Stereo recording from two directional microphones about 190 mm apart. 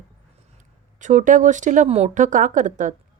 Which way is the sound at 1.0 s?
40° right (ahead or behind).